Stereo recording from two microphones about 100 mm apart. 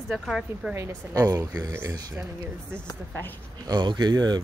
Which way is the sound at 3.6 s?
45° right (ahead or behind).